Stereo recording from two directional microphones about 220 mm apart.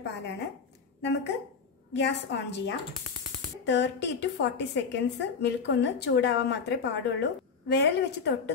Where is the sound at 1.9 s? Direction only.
50° left (ahead or behind).